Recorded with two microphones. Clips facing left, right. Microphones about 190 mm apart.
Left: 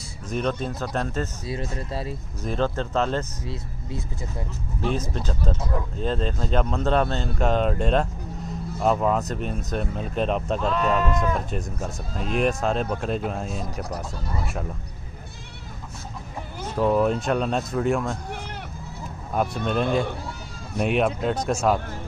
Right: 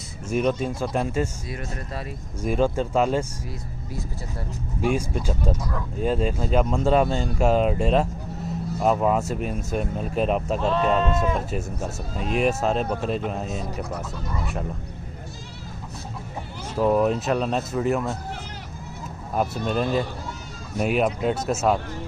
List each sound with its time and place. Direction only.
0.3 s speech: 10° right (ahead or behind)
1.5 s speech: 30° left (ahead or behind)
2.4 s speech: 10° right (ahead or behind)
4.8 s speech: 10° right (ahead or behind)
5.6 s speech: 25° left (ahead or behind)
5.9 s speech: 10° right (ahead or behind)
10.6 s speech: 25° right (ahead or behind)
11.5 s speech: 5° right (ahead or behind)
16.7 s speech: 5° right (ahead or behind)
19.3 s speech: 5° right (ahead or behind)